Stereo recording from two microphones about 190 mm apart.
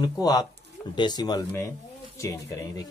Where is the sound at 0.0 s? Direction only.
20° left (ahead or behind).